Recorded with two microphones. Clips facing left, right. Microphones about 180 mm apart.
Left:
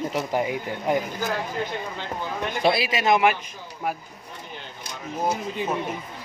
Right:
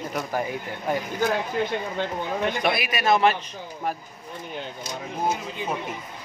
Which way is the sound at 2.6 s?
30° left (ahead or behind).